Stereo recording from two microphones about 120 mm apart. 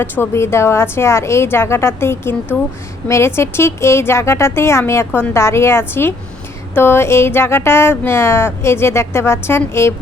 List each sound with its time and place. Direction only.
0.0 s speech: 20° left (ahead or behind)